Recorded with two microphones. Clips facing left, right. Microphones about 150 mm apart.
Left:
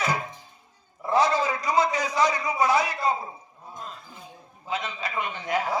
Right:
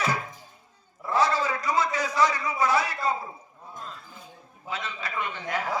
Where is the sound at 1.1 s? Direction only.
15° left (ahead or behind).